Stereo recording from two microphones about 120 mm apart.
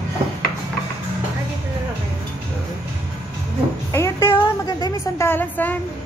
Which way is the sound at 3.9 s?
20° left (ahead or behind).